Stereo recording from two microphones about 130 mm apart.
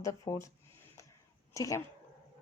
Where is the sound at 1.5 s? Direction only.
25° left (ahead or behind).